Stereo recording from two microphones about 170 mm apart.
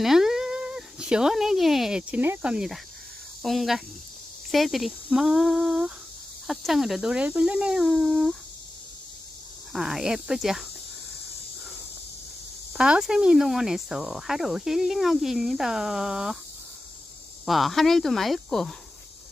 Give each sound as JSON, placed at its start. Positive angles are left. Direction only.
{"t": 0.0, "sound": "speech", "side_deg": 0}
{"t": 9.7, "sound": "speech", "side_deg": 0}
{"t": 12.7, "sound": "speech", "side_deg": -5}
{"t": 17.5, "sound": "speech", "side_deg": 0}